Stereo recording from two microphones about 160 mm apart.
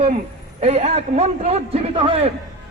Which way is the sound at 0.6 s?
45° right (ahead or behind).